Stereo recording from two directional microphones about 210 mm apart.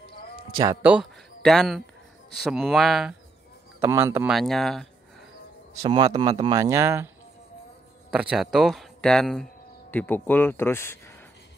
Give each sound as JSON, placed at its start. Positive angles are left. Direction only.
{"t": 0.8, "sound": "a man's voice", "side_deg": 0}
{"t": 3.8, "sound": "speech", "side_deg": -10}
{"t": 4.3, "sound": "speech", "side_deg": 0}
{"t": 5.8, "sound": "speech", "side_deg": -20}
{"t": 8.1, "sound": "speech", "side_deg": -5}